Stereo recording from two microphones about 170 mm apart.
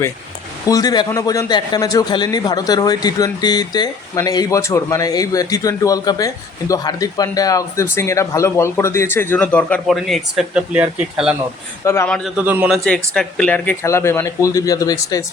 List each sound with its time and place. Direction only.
0.7 s a man's voice: 20° left (ahead or behind); by 12.3 s 5° left (ahead or behind)
12.4 s speech: 10° right (ahead or behind); by 15.2 s 20° left (ahead or behind)